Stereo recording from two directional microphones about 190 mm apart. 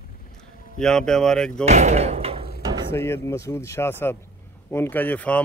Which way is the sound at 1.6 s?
35° right (ahead or behind).